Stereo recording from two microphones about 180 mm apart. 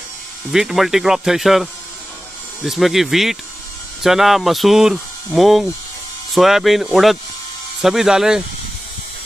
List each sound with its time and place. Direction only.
0.5 s speech: centre (ahead or behind)